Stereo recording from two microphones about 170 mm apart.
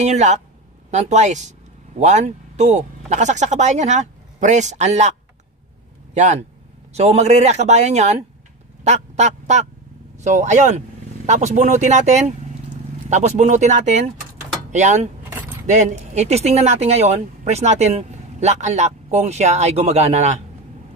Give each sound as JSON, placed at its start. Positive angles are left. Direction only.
{"t": 0.0, "sound": "speech", "side_deg": -40}
{"t": 6.1, "sound": "speech", "side_deg": -45}
{"t": 8.8, "sound": "quack", "side_deg": -40}
{"t": 10.1, "sound": "speech", "side_deg": -45}